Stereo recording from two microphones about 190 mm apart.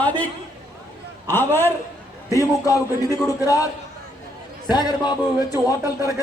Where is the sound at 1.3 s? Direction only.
10° left (ahead or behind).